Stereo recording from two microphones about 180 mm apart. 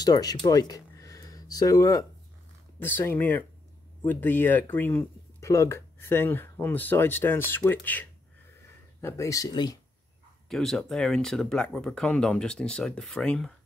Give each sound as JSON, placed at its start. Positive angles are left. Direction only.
{"t": 0.0, "sound": "speech", "side_deg": 20}
{"t": 10.5, "sound": "speech", "side_deg": 0}